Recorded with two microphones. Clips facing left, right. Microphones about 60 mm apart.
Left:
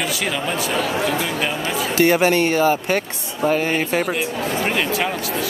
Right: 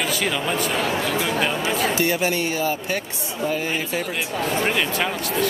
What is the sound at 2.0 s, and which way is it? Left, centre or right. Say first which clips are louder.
Speech: left 6 dB; left.